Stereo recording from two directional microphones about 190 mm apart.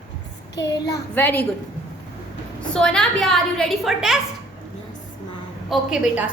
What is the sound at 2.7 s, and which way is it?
A woman's voice, 5° left (ahead or behind).